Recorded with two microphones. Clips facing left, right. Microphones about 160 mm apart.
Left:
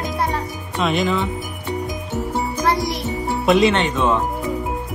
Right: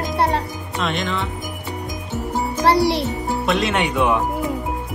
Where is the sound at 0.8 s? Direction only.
Centre (ahead or behind).